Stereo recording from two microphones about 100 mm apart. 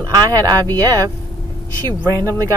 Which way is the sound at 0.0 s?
40° right (ahead or behind).